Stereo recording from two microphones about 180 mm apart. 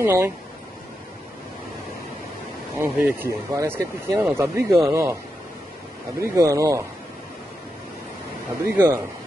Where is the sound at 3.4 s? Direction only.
15° right (ahead or behind).